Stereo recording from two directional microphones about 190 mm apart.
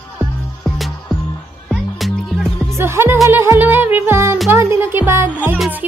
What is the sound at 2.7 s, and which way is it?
Music, 15° right (ahead or behind).